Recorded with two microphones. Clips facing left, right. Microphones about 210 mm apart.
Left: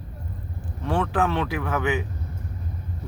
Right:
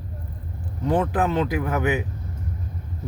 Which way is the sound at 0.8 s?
20° right (ahead or behind).